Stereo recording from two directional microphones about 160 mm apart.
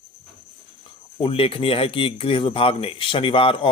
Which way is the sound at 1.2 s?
35° left (ahead or behind).